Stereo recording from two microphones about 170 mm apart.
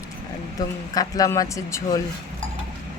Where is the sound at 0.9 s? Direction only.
20° left (ahead or behind).